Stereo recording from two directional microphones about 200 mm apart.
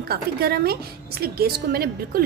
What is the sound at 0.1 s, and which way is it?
A woman's voice, 50° right (ahead or behind).